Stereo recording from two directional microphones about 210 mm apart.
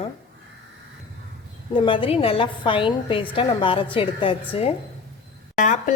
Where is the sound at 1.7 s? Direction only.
25° left (ahead or behind).